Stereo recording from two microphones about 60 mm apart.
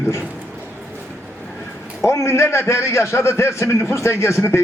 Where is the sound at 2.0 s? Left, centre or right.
Left.